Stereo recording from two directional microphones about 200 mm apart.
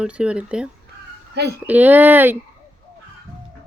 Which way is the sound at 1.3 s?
55° right (ahead or behind).